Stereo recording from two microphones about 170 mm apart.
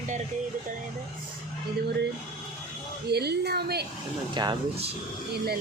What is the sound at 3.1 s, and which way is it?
Speech, 75° right (ahead or behind).